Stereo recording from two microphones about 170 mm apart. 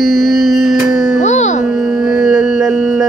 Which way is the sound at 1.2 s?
45° left (ahead or behind).